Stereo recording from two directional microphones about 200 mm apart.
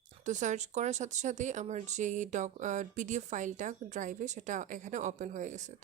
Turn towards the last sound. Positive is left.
turn(degrees=-35)  # may be behind; listen again after turning